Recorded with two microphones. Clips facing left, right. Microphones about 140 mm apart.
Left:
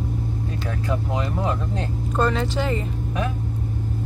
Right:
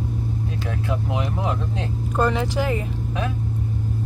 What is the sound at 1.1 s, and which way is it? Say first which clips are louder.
Speech: even; 15° right (ahead or behind).